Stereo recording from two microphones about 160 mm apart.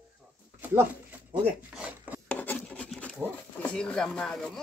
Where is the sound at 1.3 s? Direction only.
10° right (ahead or behind).